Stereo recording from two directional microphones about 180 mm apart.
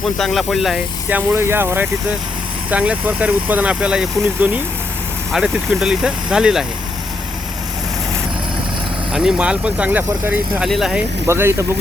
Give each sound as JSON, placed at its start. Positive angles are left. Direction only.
{"t": 0.2, "sound": "speech", "side_deg": 0}
{"t": 1.3, "sound": "speech", "side_deg": -15}
{"t": 9.1, "sound": "speech", "side_deg": -5}
{"t": 11.3, "sound": "speech", "side_deg": -15}